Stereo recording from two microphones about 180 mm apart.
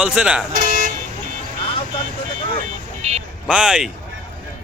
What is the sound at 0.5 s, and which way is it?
Toot, 50° right (ahead or behind).